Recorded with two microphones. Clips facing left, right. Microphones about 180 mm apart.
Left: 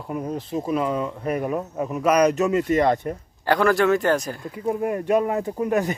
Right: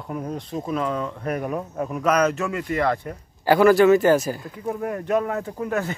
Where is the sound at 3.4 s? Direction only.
5° right (ahead or behind).